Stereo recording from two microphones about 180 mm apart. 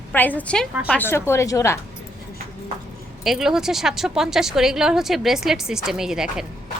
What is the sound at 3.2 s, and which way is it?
Speech, 5° right (ahead or behind).